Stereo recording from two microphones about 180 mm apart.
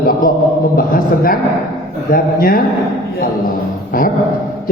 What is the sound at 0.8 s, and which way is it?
A man's voice, 50° left (ahead or behind).